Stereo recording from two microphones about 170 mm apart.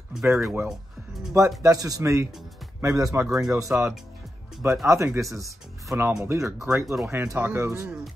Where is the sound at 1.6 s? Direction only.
20° right (ahead or behind).